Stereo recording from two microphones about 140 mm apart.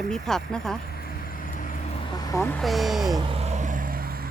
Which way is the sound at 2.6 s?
Centre (ahead or behind).